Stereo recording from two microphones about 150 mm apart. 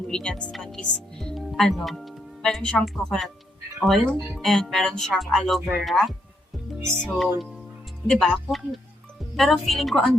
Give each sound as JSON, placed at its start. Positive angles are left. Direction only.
{"t": 0.1, "sound": "speech", "side_deg": 5}